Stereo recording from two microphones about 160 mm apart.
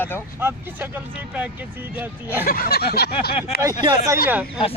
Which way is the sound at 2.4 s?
70° left (ahead or behind).